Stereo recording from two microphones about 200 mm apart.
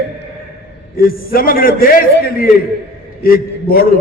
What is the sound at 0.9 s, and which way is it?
A man's voice, 45° left (ahead or behind).